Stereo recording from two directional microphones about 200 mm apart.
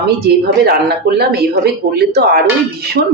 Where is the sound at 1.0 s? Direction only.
55° right (ahead or behind).